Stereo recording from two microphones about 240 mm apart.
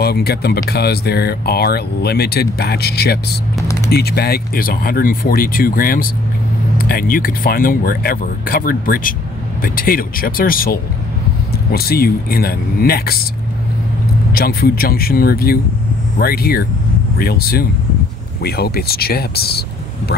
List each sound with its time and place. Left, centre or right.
0.0 s speech: left
14.3 s speech: left